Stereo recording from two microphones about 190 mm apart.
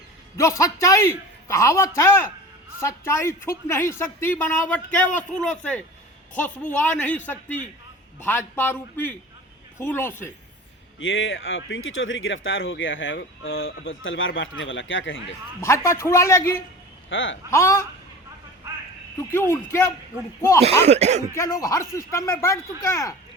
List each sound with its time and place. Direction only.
0.3 s a man's voice: 15° left (ahead or behind)
8.2 s speech: 10° left (ahead or behind)
11.0 s speech: 85° left
15.6 s speech: 15° left (ahead or behind)
17.1 s speech: 80° left
17.5 s speech: 15° left (ahead or behind)
19.3 s speech: 15° left (ahead or behind)
20.7 s speech: 35° right (ahead or behind)
21.3 s speech: 15° left (ahead or behind)